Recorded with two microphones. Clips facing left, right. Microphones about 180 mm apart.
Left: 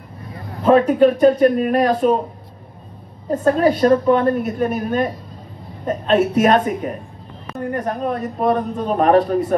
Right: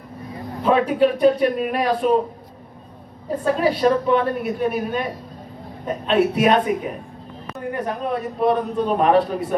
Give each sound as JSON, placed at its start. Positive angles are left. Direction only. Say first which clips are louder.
{"t": 0.7, "sound": "a man's voice", "louder": "left 5 dB", "side_deg": 45}
{"t": 3.3, "sound": "a man's voice", "louder": "left 4 dB", "side_deg": 45}